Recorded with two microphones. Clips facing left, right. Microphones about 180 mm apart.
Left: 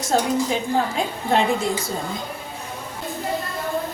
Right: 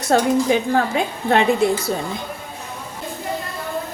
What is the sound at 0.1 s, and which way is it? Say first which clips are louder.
A woman's voice: right 5 dB; 65° right (ahead or behind).